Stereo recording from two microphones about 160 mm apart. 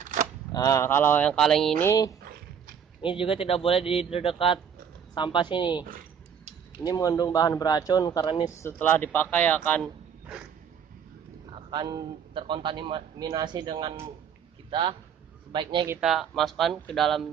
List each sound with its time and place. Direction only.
0.0 s a sound: 50° right (ahead or behind)
0.5 s speech: 20° left (ahead or behind); by 1.7 s 5° left (ahead or behind)
1.8 s a man's voice: 20° left (ahead or behind)
3.0 s a man's voice: 35° left (ahead or behind); by 9.8 s 10° left (ahead or behind)
11.7 s speech: 30° right (ahead or behind)
16.0 s speech: centre (ahead or behind)